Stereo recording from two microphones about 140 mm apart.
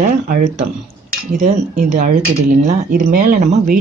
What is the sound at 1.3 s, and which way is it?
Speech, 65° right (ahead or behind).